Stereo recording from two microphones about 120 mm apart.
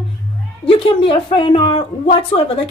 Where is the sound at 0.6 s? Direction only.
45° left (ahead or behind).